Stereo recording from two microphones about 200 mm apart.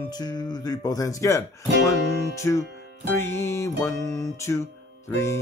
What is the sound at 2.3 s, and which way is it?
Music, 15° left (ahead or behind).